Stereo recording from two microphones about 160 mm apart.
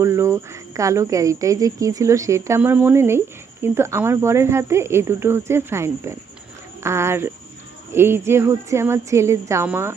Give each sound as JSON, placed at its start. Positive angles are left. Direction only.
{"t": 0.0, "sound": "speech", "side_deg": -15}